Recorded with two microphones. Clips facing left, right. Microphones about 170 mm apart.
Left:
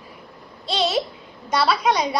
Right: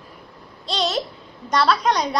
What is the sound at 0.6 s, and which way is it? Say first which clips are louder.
A child's voice: left 2 dB; 5° left (ahead or behind).